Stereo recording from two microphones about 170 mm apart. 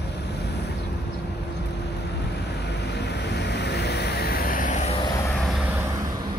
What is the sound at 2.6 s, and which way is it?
Waves, 80° left.